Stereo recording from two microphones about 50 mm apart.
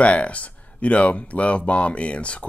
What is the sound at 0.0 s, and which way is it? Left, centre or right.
Speech, left.